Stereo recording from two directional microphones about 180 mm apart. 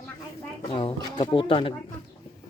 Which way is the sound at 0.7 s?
30° left (ahead or behind).